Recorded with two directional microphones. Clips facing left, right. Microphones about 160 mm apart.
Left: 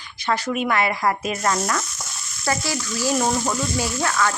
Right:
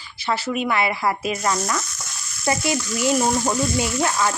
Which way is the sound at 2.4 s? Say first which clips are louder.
Right 3 dB; 20° right (ahead or behind).